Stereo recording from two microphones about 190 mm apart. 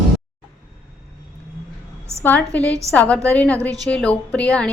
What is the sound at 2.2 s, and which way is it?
A woman's voice, 10° left (ahead or behind).